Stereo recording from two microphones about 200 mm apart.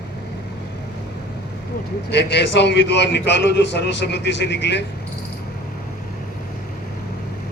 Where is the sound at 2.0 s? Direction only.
60° left (ahead or behind).